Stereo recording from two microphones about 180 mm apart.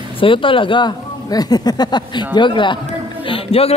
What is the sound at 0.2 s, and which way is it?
Speech, 30° left (ahead or behind).